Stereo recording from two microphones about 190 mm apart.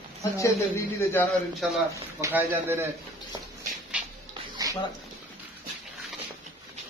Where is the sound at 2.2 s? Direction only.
15° right (ahead or behind).